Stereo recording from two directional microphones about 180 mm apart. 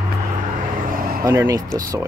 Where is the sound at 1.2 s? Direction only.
15° right (ahead or behind).